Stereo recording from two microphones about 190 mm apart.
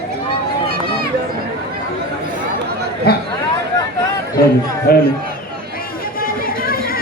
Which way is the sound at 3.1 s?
55° left (ahead or behind).